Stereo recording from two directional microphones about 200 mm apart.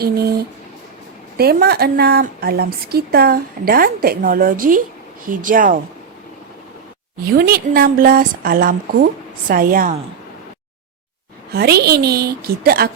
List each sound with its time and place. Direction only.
0.0 s a woman's voice: 50° right (ahead or behind)
7.3 s a woman's voice: 50° right (ahead or behind)
11.5 s a woman's voice: 50° right (ahead or behind)